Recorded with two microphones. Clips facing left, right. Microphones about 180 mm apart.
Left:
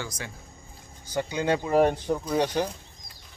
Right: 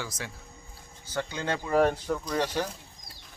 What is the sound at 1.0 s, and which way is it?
Speech, 15° left (ahead or behind).